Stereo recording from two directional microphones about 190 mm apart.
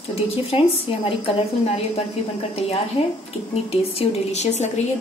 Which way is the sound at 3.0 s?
35° left (ahead or behind).